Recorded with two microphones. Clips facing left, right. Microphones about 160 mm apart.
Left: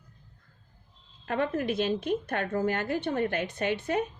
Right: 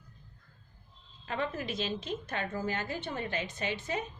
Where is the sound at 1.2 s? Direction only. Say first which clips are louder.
Left 6 dB; 55° left (ahead or behind).